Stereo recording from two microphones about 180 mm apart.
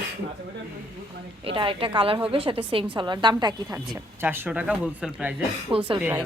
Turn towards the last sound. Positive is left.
turn(degrees=-10)  # may be behind; listen again after turning